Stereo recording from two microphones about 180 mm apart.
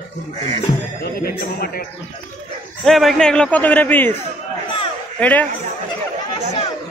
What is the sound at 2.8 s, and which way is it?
A man's voice, centre (ahead or behind).